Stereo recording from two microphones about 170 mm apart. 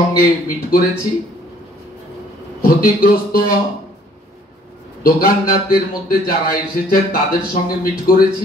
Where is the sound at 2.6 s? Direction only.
55° left (ahead or behind).